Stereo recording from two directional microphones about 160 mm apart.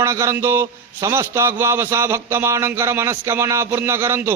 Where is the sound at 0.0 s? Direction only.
20° right (ahead or behind).